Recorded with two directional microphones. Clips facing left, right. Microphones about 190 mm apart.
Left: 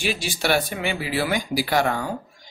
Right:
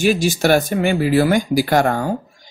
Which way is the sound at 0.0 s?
45° right (ahead or behind).